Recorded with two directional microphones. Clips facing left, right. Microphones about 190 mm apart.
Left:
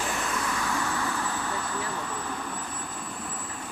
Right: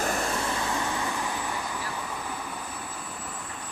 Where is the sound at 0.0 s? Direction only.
40° right (ahead or behind); by 2.8 s 5° right (ahead or behind).